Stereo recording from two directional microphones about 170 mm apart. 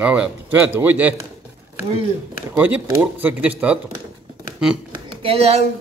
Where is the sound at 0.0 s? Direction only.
10° right (ahead or behind).